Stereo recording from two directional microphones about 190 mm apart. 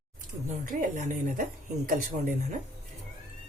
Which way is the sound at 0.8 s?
40° right (ahead or behind).